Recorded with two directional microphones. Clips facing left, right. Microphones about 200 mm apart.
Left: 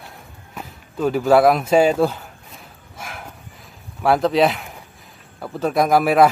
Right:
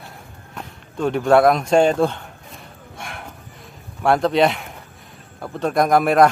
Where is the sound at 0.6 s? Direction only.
5° left (ahead or behind).